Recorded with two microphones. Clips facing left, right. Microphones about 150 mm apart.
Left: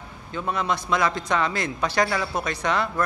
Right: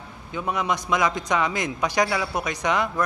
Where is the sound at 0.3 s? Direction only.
15° right (ahead or behind).